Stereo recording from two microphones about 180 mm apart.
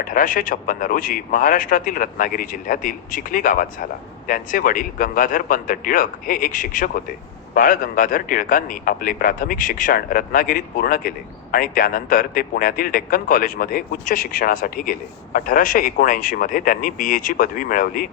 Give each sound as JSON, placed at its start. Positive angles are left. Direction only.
{"t": 0.0, "sound": "speech", "side_deg": 50}